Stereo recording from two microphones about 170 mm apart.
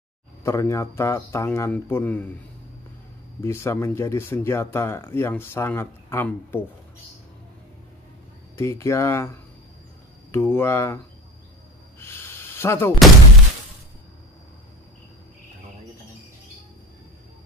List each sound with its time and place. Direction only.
0.4 s speech: 15° left (ahead or behind)
3.3 s speech: 15° left (ahead or behind)
8.5 s speech: 15° left (ahead or behind)
12.0 s a sound: 15° left (ahead or behind)